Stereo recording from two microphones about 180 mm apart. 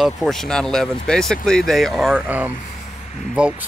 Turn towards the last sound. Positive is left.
turn(degrees=-5)  # may be behind; listen again after turning